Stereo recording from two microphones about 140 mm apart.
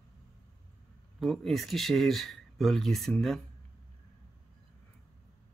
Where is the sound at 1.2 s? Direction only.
Centre (ahead or behind).